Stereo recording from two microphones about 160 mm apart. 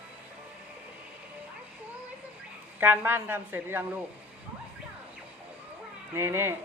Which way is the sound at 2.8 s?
15° right (ahead or behind).